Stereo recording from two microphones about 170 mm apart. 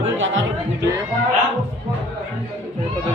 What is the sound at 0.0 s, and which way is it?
Music, 90° right.